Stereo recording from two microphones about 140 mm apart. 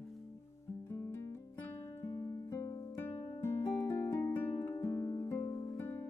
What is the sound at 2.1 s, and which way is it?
Music, 25° left (ahead or behind).